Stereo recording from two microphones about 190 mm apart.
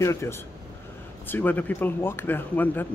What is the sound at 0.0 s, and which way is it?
Speech, 15° left (ahead or behind).